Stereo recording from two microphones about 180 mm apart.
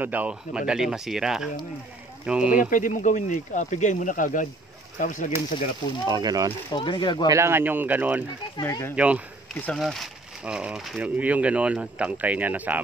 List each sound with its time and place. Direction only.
0.0 s speech: 10° right (ahead or behind)
2.6 s speech: 45° left (ahead or behind)
6.0 s speech: 20° right (ahead or behind)
6.7 s speech: 25° left (ahead or behind)
7.2 s speech: 15° right (ahead or behind)
8.5 s speech: 15° left (ahead or behind)
8.9 s speech: 10° right (ahead or behind)